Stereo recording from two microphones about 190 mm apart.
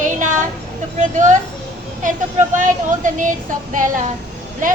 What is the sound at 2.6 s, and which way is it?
Child singing, 40° right (ahead or behind).